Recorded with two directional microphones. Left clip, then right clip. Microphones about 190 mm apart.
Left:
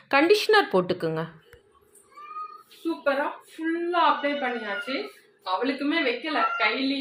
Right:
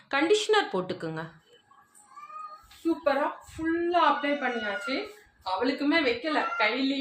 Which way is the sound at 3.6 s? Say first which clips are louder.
Left 1 dB; centre (ahead or behind).